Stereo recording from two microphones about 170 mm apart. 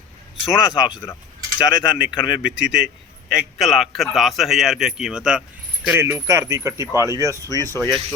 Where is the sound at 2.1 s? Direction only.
25° left (ahead or behind).